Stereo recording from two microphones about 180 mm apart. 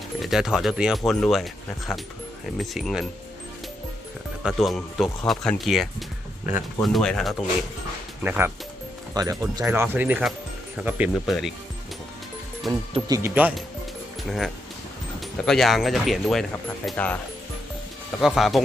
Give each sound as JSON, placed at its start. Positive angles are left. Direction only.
{"t": 0.2, "sound": "speech", "side_deg": 0}
{"t": 2.6, "sound": "speech", "side_deg": 0}
{"t": 4.4, "sound": "speech", "side_deg": 0}
{"t": 8.2, "sound": "speech", "side_deg": -10}
{"t": 12.9, "sound": "speech", "side_deg": -20}
{"t": 14.3, "sound": "speech", "side_deg": 0}
{"t": 18.2, "sound": "speech", "side_deg": 0}